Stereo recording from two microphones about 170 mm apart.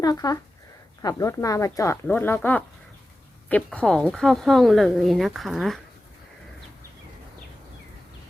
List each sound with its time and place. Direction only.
0.0 s speech: 20° left (ahead or behind); by 5.8 s centre (ahead or behind)